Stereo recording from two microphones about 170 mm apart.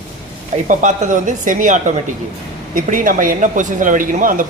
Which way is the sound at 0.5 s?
45° right (ahead or behind).